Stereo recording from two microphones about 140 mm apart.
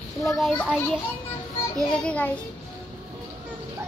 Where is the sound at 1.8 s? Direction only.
5° left (ahead or behind).